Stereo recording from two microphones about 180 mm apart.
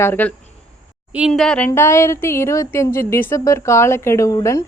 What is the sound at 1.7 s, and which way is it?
A woman's voice, 15° left (ahead or behind).